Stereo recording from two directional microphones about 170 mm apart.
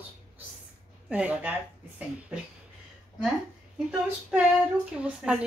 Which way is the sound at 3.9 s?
5° right (ahead or behind).